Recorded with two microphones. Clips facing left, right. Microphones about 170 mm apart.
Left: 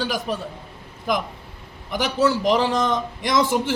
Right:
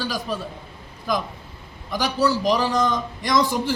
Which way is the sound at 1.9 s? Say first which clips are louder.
Left 1 dB; 25° left (ahead or behind).